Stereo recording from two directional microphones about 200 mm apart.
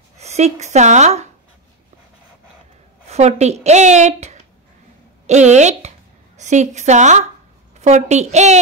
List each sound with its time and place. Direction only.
0.2 s a woman's voice: 35° right (ahead or behind)
3.1 s a woman's voice: 35° right (ahead or behind)